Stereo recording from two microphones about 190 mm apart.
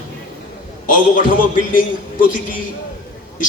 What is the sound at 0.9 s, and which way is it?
Speech, 45° left (ahead or behind).